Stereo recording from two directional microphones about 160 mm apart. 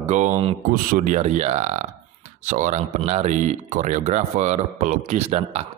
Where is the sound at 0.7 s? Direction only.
55° right (ahead or behind).